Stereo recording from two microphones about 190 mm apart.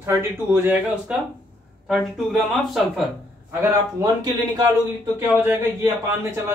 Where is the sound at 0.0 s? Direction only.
15° right (ahead or behind).